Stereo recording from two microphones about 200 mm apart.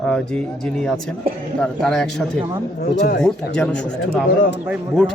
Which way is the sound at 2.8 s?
55° left (ahead or behind).